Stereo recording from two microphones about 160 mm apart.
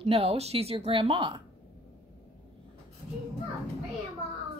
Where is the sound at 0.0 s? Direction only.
35° right (ahead or behind).